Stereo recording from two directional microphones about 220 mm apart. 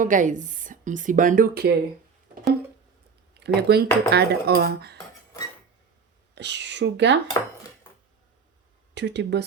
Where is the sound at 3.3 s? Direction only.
50° right (ahead or behind).